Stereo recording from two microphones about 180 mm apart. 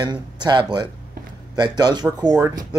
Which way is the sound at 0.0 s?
25° right (ahead or behind).